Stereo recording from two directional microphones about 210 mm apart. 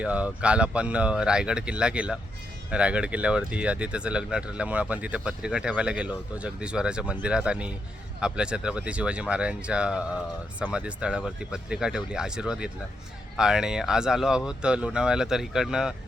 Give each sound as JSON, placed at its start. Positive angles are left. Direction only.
{"t": 0.0, "sound": "speech", "side_deg": -5}